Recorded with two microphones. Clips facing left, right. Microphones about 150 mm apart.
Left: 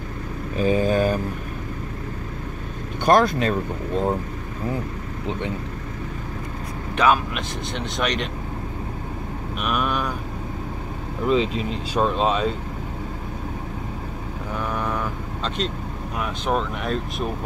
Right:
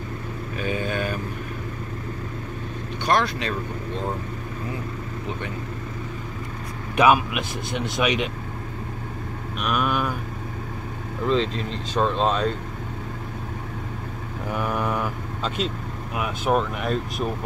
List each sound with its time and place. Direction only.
0.6 s mantra: 35° left (ahead or behind)
3.1 s speech: 45° left (ahead or behind)
7.0 s speech: 10° right (ahead or behind)
9.6 s vehicle: centre (ahead or behind)
11.2 s speech: 10° left (ahead or behind)
14.6 s vehicle: 10° right (ahead or behind)
16.2 s speech: 5° right (ahead or behind)